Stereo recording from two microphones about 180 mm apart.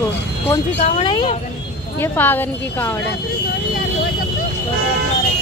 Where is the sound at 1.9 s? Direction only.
10° left (ahead or behind).